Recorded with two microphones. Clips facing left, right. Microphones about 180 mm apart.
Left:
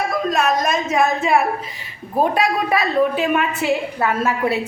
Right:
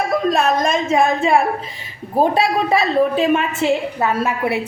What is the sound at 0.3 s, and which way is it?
A woman's voice, 30° right (ahead or behind).